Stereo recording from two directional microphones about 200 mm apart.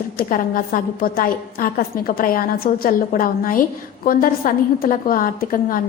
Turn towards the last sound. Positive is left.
turn(degrees=45)  # may be behind; listen again after turning